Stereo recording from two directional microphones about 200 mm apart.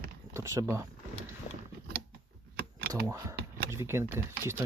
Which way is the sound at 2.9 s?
15° right (ahead or behind).